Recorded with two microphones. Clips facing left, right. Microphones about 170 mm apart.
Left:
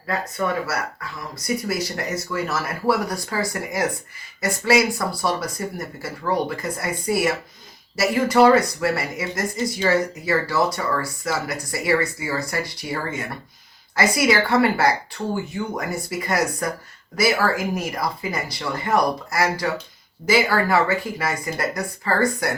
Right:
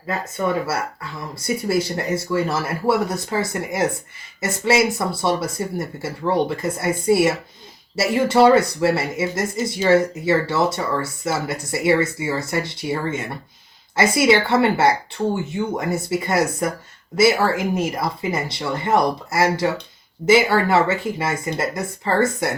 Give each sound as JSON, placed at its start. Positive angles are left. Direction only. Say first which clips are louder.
{"t": 0.1, "sound": "speech", "louder": "right 2 dB", "side_deg": -25}